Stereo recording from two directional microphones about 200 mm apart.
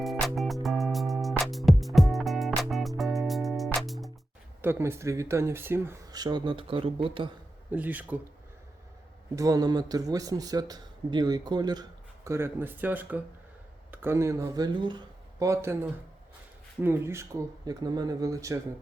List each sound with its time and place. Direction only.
0.0 s music: centre (ahead or behind)
4.6 s a man's voice: 10° right (ahead or behind)
7.7 s a man's voice: 10° right (ahead or behind)
9.3 s a man's voice: 15° right (ahead or behind)